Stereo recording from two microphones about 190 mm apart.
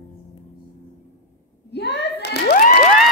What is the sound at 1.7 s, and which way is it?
Hands, 60° left (ahead or behind).